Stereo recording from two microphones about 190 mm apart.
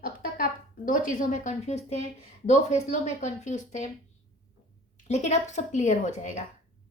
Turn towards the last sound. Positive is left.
turn(degrees=40)  # may be behind; listen again after turning